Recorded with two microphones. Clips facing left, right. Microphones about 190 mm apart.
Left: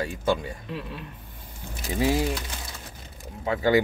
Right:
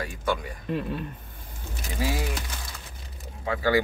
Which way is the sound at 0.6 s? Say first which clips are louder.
Right 10 dB; 50° right (ahead or behind).